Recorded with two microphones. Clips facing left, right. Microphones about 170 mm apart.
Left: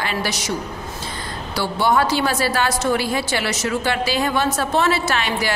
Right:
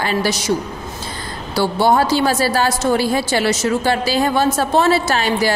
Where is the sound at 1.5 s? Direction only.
30° right (ahead or behind).